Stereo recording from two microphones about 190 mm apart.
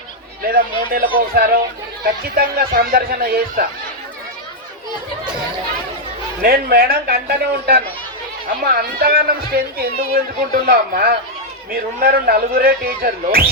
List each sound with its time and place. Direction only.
0.9 s speech: 50° right (ahead or behind)
6.4 s speech: 50° right (ahead or behind)